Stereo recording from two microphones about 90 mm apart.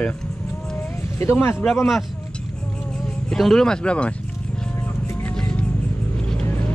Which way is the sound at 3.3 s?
5° left (ahead or behind).